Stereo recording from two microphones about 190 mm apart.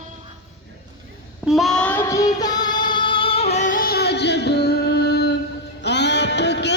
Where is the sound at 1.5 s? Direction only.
Centre (ahead or behind); by 5.3 s 60° left (ahead or behind).